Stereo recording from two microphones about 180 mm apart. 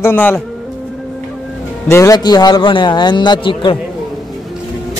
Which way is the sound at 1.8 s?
15° left (ahead or behind).